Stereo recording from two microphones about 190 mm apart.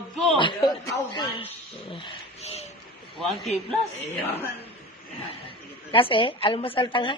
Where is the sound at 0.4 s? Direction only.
25° left (ahead or behind).